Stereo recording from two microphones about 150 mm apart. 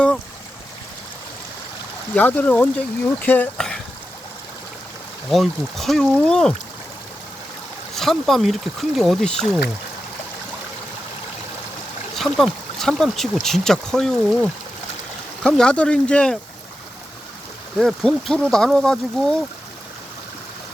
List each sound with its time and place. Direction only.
2.1 s speech: 10° left (ahead or behind)
5.3 s speech: centre (ahead or behind)
7.9 s speech: centre (ahead or behind)
12.1 s speech: centre (ahead or behind)
17.7 s speech: centre (ahead or behind)